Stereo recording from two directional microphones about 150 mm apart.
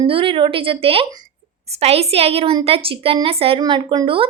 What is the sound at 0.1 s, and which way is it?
A woman's voice, 35° right (ahead or behind).